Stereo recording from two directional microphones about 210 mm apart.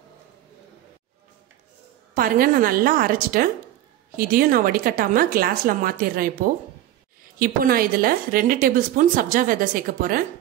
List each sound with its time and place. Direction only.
2.1 s a woman's voice: 45° right (ahead or behind)